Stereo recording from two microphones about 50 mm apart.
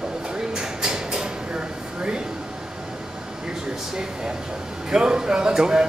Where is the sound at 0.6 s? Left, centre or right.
Centre.